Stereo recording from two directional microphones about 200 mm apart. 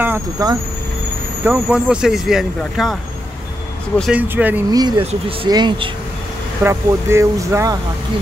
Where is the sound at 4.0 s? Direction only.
5° right (ahead or behind).